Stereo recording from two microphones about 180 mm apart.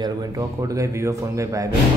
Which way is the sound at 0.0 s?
20° right (ahead or behind).